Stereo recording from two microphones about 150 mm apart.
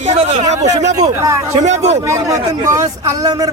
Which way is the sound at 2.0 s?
20° right (ahead or behind).